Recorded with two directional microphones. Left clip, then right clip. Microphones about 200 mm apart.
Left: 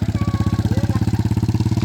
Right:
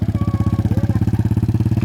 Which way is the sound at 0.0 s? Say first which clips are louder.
Even; 5° left (ahead or behind).